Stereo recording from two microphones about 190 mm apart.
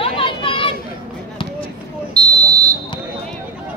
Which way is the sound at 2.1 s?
20° right (ahead or behind).